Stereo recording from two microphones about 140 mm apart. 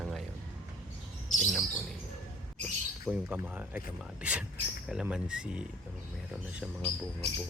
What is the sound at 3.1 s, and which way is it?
Speech, centre (ahead or behind).